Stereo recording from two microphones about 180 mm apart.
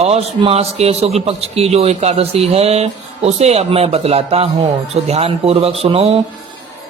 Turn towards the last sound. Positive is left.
turn(degrees=-30)  # may be behind; listen again after turning